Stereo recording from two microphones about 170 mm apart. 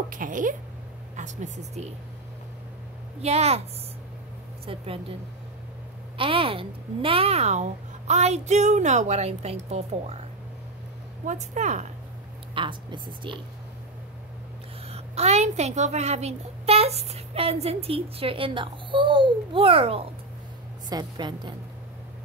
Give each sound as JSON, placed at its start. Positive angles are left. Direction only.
{"t": 0.1, "sound": "a woman's voice", "side_deg": -50}
{"t": 3.2, "sound": "a child's voice", "side_deg": -40}
{"t": 4.6, "sound": "a child's voice", "side_deg": -35}
{"t": 6.1, "sound": "a child's voice", "side_deg": -30}
{"t": 11.2, "sound": "a woman's voice", "side_deg": -45}
{"t": 12.5, "sound": "a woman's voice", "side_deg": -30}
{"t": 14.9, "sound": "a child's voice", "side_deg": -40}